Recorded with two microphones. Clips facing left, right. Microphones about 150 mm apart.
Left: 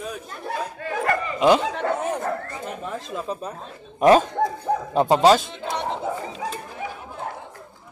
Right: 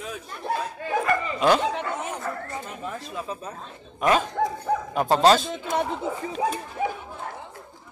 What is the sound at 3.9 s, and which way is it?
Speech, 35° left (ahead or behind).